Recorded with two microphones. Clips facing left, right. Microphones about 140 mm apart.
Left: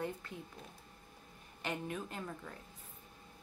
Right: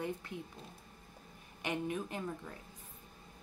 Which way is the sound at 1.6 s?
15° right (ahead or behind).